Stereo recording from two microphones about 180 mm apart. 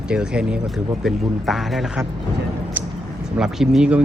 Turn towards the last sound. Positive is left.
turn(degrees=-5)  # may be behind; listen again after turning